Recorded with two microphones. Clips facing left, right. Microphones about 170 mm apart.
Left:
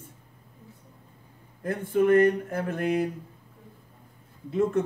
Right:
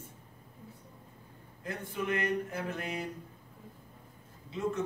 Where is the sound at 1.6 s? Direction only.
55° left (ahead or behind).